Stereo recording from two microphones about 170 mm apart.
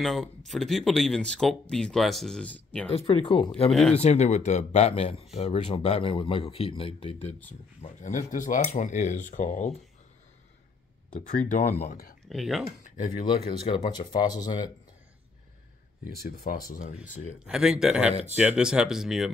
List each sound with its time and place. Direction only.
0.0 s speech: centre (ahead or behind)
2.9 s speech: 35° left (ahead or behind)
11.1 s speech: 45° left (ahead or behind)
12.3 s speech: centre (ahead or behind)
13.2 s speech: 30° left (ahead or behind)
16.4 s speech: 55° left (ahead or behind)
17.5 s speech: 5° right (ahead or behind)